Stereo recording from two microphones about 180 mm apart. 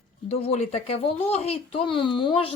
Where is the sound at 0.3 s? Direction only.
35° left (ahead or behind).